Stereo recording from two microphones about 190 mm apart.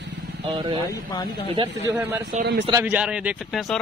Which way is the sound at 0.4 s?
25° right (ahead or behind).